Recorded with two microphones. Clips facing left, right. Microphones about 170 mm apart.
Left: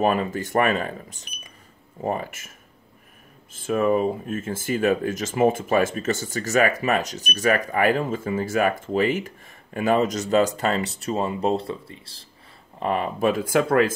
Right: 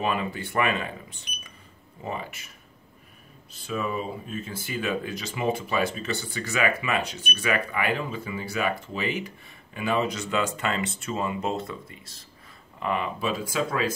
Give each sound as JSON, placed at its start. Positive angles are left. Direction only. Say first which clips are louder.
{"t": 0.0, "sound": "speech", "louder": "left 6 dB", "side_deg": 45}
{"t": 3.5, "sound": "speech", "louder": "left 9 dB", "side_deg": 50}